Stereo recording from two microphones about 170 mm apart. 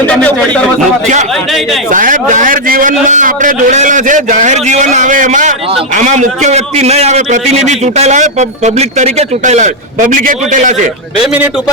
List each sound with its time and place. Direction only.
0.1 s speech: 10° left (ahead or behind)
1.9 s a man's voice: 50° right (ahead or behind)